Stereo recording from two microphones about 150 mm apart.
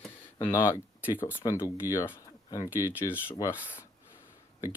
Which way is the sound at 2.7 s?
10° right (ahead or behind).